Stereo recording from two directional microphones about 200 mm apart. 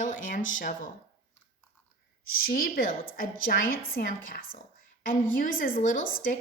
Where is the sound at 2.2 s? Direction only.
45° left (ahead or behind).